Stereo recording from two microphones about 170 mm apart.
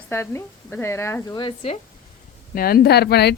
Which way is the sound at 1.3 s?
30° left (ahead or behind).